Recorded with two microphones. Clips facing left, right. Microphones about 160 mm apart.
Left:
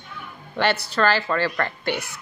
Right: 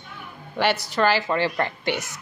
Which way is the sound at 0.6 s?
15° right (ahead or behind).